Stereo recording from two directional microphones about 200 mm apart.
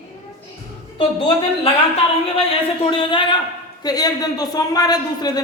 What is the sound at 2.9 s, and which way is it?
Speech, 25° left (ahead or behind).